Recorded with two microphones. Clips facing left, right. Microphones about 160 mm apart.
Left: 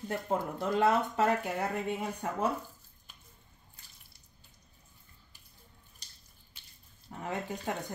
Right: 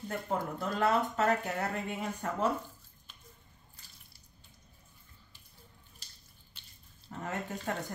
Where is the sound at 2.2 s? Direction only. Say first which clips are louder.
Even; 10° left (ahead or behind).